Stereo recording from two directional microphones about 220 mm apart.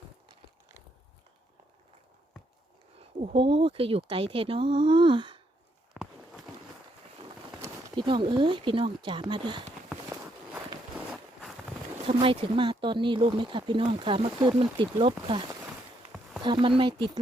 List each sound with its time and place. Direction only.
3.0 s speech: 25° right (ahead or behind)
5.9 s a sound: centre (ahead or behind)
7.6 s speech: 15° right (ahead or behind)
9.9 s walk: 10° right (ahead or behind)
10.9 s a sound: centre (ahead or behind)
12.0 s speech: 25° right (ahead or behind)
16.4 s speech: 20° right (ahead or behind)